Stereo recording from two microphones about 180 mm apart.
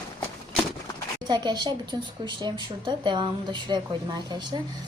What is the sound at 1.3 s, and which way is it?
A woman's voice, 25° right (ahead or behind).